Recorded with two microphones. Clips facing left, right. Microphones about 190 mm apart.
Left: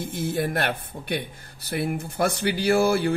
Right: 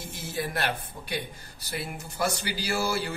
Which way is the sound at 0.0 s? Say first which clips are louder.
Left 7 dB; 55° left (ahead or behind).